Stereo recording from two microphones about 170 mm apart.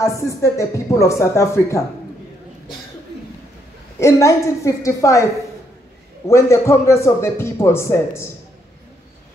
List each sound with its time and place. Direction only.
0.0 s a man's voice: 15° left (ahead or behind)
4.0 s a man's voice: 15° left (ahead or behind)
6.2 s a man's voice: 15° left (ahead or behind)